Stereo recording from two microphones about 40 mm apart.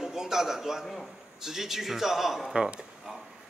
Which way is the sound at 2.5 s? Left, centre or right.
Right.